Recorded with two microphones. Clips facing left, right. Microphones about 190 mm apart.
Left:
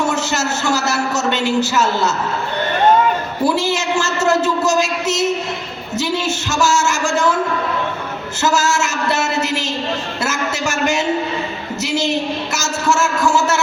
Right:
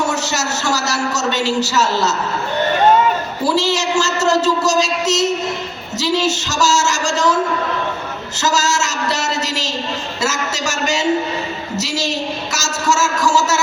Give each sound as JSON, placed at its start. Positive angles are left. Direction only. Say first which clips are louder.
{"t": 0.1, "sound": "a man's voice", "louder": "left 1 dB", "side_deg": 55}
{"t": 3.5, "sound": "speech", "louder": "right 1 dB", "side_deg": 55}
{"t": 8.4, "sound": "a sound", "louder": "left 1 dB", "side_deg": 55}